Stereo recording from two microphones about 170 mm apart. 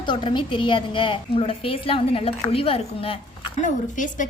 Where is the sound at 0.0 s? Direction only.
30° left (ahead or behind).